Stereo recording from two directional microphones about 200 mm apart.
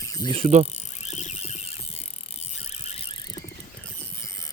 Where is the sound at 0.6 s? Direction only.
35° left (ahead or behind).